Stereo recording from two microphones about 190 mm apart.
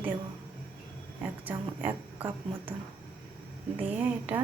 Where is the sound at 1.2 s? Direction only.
10° right (ahead or behind).